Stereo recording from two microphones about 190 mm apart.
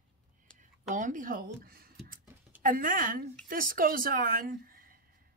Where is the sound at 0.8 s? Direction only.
40° right (ahead or behind).